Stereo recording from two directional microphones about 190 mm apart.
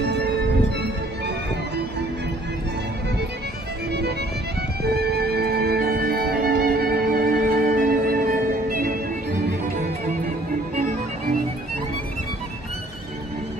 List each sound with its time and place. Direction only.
0.0 s music: 60° right (ahead or behind)
4.8 s music: 55° right (ahead or behind)